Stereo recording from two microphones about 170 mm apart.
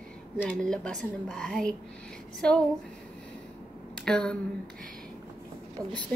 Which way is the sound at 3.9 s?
5° left (ahead or behind).